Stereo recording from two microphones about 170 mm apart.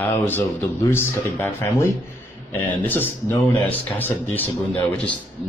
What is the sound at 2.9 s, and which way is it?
Speech, 10° left (ahead or behind).